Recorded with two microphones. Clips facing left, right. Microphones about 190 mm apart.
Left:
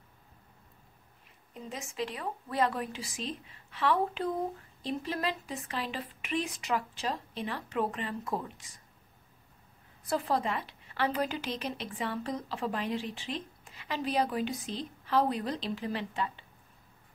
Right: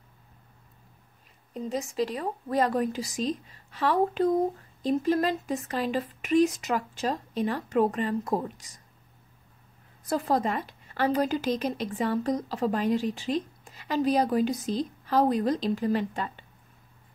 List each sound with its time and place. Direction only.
1.5 s a woman's voice: 35° right (ahead or behind)
10.0 s a woman's voice: 40° right (ahead or behind)